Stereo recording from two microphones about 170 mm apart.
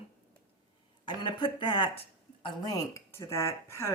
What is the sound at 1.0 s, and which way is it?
Speech, 30° left (ahead or behind).